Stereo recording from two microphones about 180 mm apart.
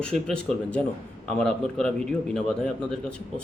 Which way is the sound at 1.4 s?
5° left (ahead or behind).